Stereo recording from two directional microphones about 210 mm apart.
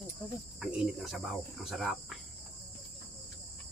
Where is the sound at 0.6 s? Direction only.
Centre (ahead or behind).